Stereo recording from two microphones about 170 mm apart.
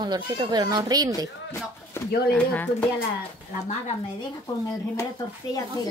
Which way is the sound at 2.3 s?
10° left (ahead or behind).